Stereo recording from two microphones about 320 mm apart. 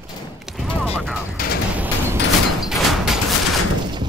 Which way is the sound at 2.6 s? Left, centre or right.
Centre.